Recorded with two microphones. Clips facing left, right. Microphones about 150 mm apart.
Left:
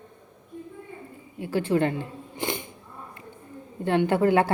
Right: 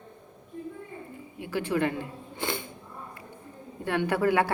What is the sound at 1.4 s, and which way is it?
Speech, 30° left (ahead or behind).